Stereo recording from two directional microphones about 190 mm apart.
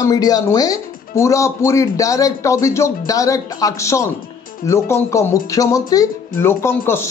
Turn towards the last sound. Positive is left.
turn(degrees=15)  # may be behind; listen again after turning